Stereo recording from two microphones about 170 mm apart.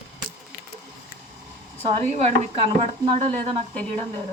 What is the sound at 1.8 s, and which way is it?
A woman's voice, 40° right (ahead or behind).